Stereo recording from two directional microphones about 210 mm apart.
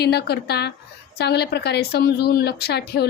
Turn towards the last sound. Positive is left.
turn(degrees=50)  # may be behind; listen again after turning